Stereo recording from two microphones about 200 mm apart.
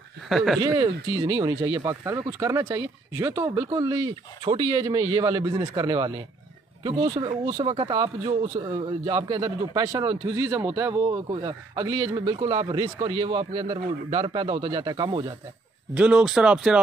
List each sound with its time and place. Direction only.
0.3 s speech: centre (ahead or behind)
0.6 s speech: 20° right (ahead or behind)
15.9 s speech: 5° right (ahead or behind)